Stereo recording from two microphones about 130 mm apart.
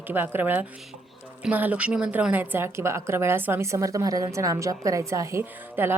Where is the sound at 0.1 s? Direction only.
15° right (ahead or behind).